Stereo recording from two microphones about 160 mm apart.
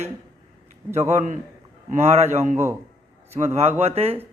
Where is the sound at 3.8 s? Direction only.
40° right (ahead or behind).